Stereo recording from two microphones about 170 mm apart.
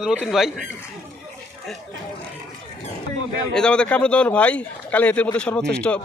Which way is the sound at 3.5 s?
5° left (ahead or behind).